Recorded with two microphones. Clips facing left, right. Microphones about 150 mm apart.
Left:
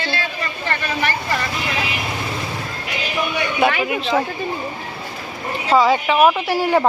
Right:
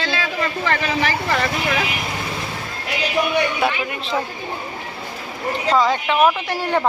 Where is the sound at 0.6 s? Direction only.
90° right.